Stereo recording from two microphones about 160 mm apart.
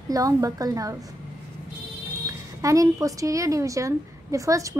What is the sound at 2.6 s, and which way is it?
A woman's voice, 20° right (ahead or behind).